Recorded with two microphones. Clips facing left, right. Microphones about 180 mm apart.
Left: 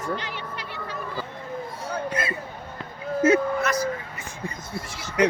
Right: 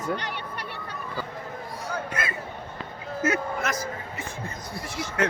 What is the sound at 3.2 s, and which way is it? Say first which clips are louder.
Speech: left 7 dB; 30° left (ahead or behind).